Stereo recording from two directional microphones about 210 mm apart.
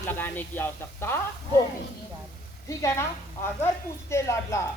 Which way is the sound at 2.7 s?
15° left (ahead or behind).